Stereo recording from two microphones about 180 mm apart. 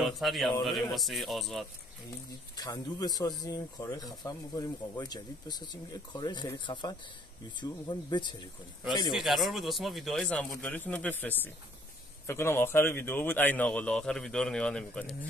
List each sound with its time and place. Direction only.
0.0 s speech: centre (ahead or behind)
2.5 s speech: 20° left (ahead or behind)
9.1 s speech: centre (ahead or behind)